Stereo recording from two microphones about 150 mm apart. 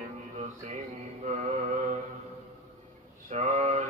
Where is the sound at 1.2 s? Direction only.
50° right (ahead or behind).